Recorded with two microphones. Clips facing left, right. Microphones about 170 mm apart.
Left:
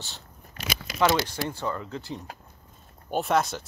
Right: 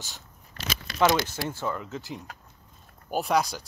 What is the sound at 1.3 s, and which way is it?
Speech, 15° left (ahead or behind).